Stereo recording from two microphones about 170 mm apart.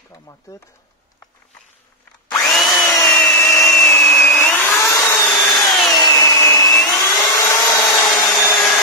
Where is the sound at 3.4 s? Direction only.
15° left (ahead or behind).